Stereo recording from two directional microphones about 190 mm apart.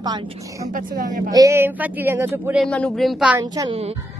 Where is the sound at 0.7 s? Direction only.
45° right (ahead or behind).